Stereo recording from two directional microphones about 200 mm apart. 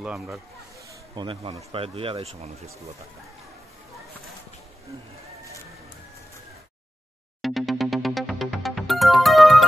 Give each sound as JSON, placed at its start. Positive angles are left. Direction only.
{"t": 0.0, "sound": "speech", "side_deg": 0}
{"t": 0.8, "sound": "snake", "side_deg": -25}
{"t": 1.7, "sound": "speech", "side_deg": -25}
{"t": 7.4, "sound": "music", "side_deg": 0}